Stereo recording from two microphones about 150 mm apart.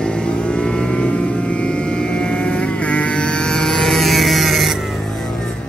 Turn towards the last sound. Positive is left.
turn(degrees=0)  # may be behind; listen again after turning